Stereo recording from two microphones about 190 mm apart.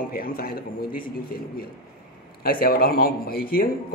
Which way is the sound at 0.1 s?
50° left (ahead or behind).